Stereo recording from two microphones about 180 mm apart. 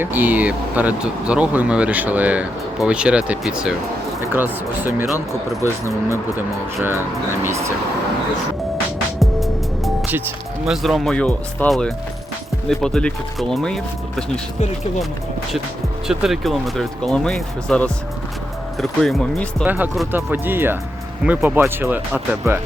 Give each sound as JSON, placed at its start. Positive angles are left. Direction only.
{"t": 0.0, "sound": "speech", "side_deg": -10}
{"t": 5.6, "sound": "speech", "side_deg": 15}
{"t": 7.4, "sound": "speech", "side_deg": -15}
{"t": 9.1, "sound": "music", "side_deg": 0}
{"t": 10.2, "sound": "speech", "side_deg": -10}
{"t": 10.8, "sound": "speech", "side_deg": 0}
{"t": 16.0, "sound": "speech", "side_deg": 0}
{"t": 19.6, "sound": "speech", "side_deg": -10}